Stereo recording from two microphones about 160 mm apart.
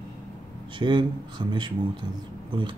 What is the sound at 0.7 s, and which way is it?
Speech, 30° right (ahead or behind).